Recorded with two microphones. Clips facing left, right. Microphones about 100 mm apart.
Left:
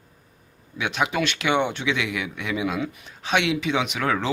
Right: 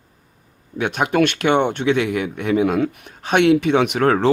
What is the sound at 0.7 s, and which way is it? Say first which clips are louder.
Speech: right 6 dB; 50° right (ahead or behind).